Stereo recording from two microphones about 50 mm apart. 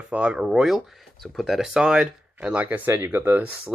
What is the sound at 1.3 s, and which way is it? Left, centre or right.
Speech, centre.